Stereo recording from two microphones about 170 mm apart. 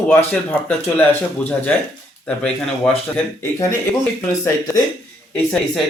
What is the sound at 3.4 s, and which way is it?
Speech, 15° left (ahead or behind).